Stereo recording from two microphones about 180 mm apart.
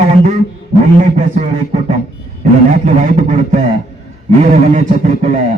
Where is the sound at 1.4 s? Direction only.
40° right (ahead or behind).